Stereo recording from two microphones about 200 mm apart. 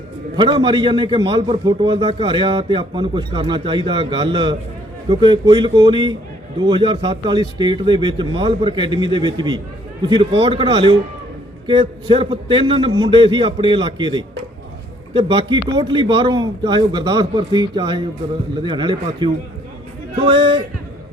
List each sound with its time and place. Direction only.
0.3 s a man's voice: 25° right (ahead or behind)